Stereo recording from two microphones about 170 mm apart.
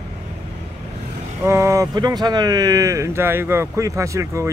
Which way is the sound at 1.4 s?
15° right (ahead or behind).